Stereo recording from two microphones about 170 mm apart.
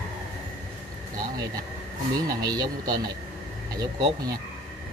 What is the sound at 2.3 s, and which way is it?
Speech, 25° right (ahead or behind).